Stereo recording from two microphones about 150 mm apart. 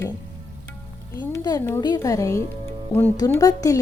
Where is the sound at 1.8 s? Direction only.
20° left (ahead or behind).